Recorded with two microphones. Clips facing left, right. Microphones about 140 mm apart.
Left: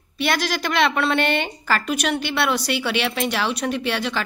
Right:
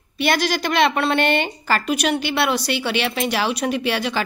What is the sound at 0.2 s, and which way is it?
A woman's voice, centre (ahead or behind).